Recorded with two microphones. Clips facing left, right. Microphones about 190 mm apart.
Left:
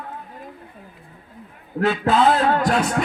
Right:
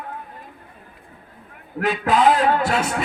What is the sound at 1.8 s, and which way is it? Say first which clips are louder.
A man's voice: even; 10° right (ahead or behind).